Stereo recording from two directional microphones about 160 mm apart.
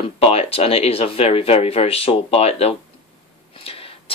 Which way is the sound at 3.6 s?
35° left (ahead or behind).